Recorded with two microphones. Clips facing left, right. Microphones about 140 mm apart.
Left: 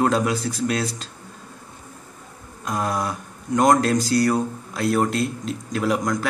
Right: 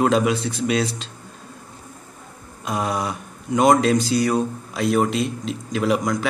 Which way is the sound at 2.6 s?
10° right (ahead or behind).